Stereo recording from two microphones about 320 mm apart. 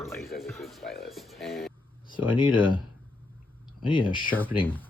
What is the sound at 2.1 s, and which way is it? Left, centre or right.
Speech, centre.